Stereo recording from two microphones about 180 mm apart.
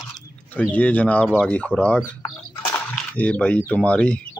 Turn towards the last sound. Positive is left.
turn(degrees=5)  # may be behind; listen again after turning